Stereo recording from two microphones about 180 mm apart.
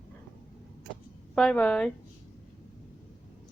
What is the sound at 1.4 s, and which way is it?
Speech, 5° left (ahead or behind).